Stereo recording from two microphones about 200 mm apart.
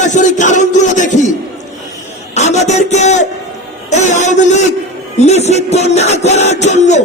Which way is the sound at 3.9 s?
35° left (ahead or behind).